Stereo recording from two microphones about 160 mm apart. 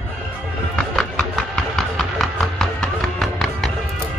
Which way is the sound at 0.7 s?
5° left (ahead or behind).